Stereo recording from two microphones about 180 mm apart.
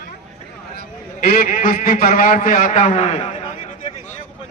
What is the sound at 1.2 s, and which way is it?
A man's voice, 55° left (ahead or behind).